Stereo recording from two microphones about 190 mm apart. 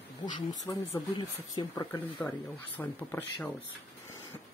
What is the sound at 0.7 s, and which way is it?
Speech, 20° left (ahead or behind).